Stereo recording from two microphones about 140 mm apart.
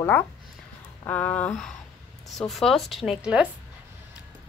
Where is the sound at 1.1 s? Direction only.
10° left (ahead or behind); by 3.5 s 5° right (ahead or behind).